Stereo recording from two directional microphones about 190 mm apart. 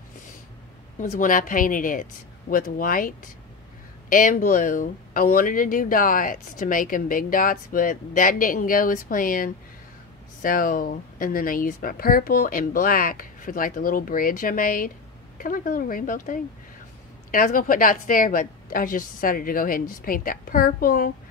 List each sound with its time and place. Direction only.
0.9 s speech: 45° left (ahead or behind)